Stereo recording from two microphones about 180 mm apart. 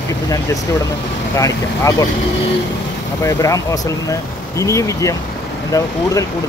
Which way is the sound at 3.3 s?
20° left (ahead or behind).